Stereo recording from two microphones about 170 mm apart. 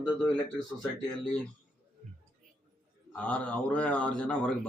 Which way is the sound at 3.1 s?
10° left (ahead or behind).